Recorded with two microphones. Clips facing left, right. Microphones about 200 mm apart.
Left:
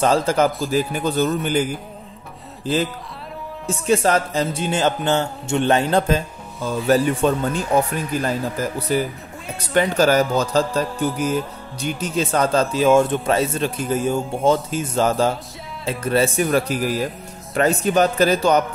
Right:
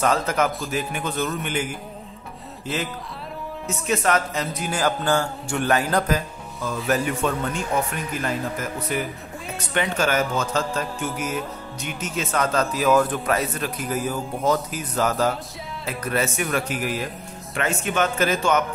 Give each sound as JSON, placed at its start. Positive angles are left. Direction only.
{"t": 0.0, "sound": "speech", "side_deg": 30}